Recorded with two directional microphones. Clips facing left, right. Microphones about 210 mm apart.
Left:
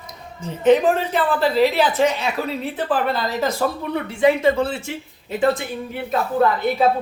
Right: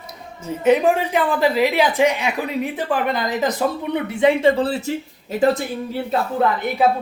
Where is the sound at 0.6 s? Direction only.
10° right (ahead or behind); by 6.0 s 40° right (ahead or behind).